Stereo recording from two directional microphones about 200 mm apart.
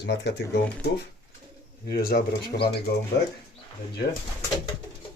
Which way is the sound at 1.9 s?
50° left (ahead or behind).